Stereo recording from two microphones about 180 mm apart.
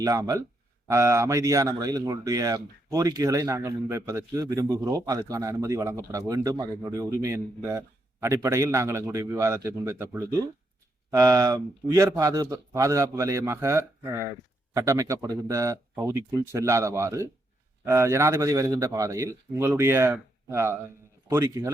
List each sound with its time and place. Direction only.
0.0 s a man's voice: 20° right (ahead or behind)